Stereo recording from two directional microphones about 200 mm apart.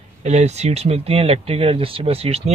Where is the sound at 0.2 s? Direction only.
35° right (ahead or behind).